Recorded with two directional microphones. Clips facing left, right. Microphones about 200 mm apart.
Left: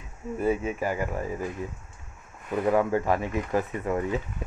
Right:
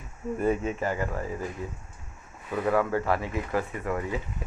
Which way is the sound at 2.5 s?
15° left (ahead or behind).